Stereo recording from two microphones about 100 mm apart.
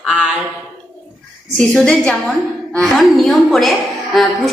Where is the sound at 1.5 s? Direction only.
10° left (ahead or behind).